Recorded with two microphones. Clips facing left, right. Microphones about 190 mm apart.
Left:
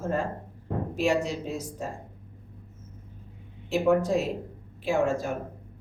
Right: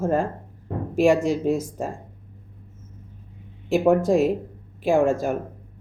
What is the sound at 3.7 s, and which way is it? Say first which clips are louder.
A woman's voice: right 5 dB; 50° right (ahead or behind).